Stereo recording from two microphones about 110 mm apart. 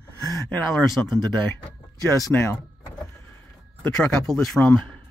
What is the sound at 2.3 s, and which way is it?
Speech, 10° left (ahead or behind).